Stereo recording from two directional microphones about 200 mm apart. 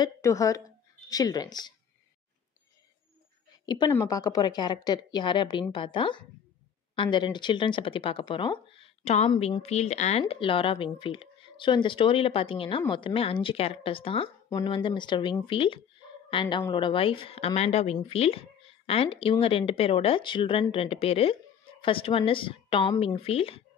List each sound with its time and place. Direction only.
0.0 s speech: 15° left (ahead or behind)
3.6 s a woman's voice: 20° left (ahead or behind)